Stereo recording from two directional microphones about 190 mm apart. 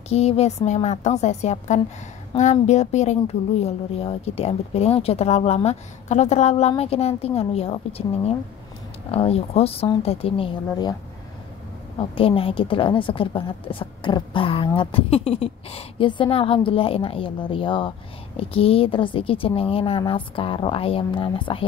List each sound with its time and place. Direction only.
0.1 s a woman's voice: 35° left (ahead or behind)
12.0 s speech: 30° left (ahead or behind)